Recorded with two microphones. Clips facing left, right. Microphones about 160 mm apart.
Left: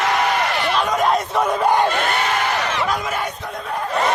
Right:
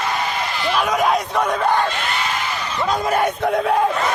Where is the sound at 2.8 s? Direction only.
25° right (ahead or behind).